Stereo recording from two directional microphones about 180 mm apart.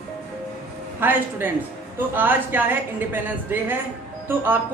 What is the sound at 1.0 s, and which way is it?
A woman's voice, 10° right (ahead or behind).